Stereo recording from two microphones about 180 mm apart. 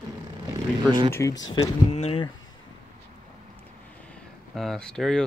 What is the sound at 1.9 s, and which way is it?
Speech, 35° left (ahead or behind).